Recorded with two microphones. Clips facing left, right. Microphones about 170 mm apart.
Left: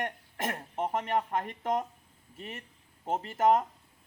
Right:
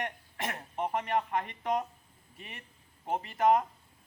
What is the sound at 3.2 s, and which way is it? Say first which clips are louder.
Speech: left 1 dB; 45° left (ahead or behind).